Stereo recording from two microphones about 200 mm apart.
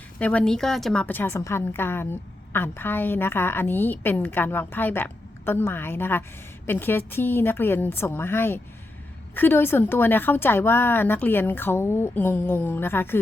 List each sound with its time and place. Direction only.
0.2 s a woman's voice: 5° left (ahead or behind)